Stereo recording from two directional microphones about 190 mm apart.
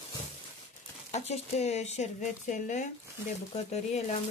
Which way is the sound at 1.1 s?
35° left (ahead or behind).